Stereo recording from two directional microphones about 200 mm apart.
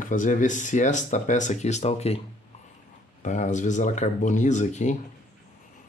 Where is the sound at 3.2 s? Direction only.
40° left (ahead or behind).